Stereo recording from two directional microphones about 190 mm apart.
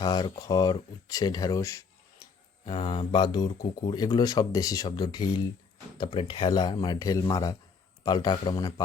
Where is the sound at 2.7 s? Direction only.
25° left (ahead or behind).